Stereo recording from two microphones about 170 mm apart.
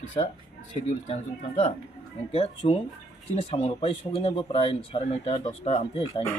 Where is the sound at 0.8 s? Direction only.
35° left (ahead or behind).